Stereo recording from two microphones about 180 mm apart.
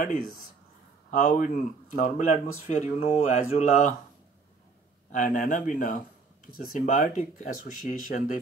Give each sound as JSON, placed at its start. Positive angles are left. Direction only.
{"t": 1.1, "sound": "speech", "side_deg": 50}
{"t": 5.1, "sound": "speech", "side_deg": 50}